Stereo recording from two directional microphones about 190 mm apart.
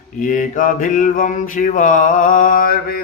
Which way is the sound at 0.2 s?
45° left (ahead or behind).